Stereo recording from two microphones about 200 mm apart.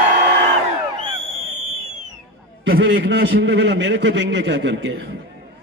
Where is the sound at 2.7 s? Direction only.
60° right (ahead or behind).